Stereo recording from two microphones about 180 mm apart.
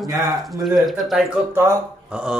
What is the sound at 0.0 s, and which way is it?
Speech, 20° right (ahead or behind).